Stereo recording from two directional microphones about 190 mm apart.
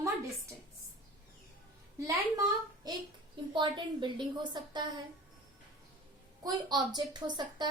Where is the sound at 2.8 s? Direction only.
20° right (ahead or behind).